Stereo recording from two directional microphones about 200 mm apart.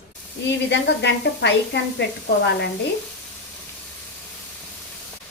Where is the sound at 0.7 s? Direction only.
60° left (ahead or behind).